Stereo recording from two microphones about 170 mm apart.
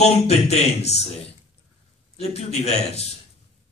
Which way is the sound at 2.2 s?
40° left (ahead or behind).